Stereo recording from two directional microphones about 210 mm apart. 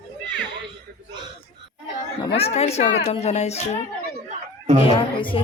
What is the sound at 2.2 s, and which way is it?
A woman's voice, 25° left (ahead or behind).